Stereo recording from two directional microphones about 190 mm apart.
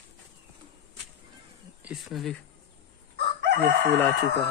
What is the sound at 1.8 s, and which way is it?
Speech, centre (ahead or behind).